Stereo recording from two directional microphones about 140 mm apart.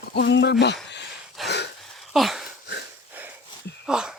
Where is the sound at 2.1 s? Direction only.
Centre (ahead or behind).